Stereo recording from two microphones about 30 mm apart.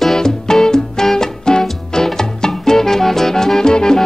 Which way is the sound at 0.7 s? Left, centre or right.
Left.